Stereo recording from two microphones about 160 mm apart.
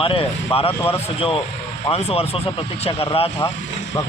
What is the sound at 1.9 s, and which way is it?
A man's voice, 40° left (ahead or behind).